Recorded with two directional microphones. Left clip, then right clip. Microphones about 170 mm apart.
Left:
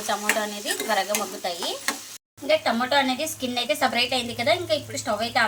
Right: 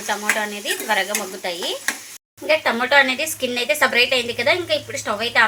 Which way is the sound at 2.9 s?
30° right (ahead or behind).